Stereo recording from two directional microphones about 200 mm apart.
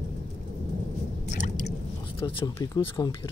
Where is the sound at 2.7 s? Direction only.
25° left (ahead or behind).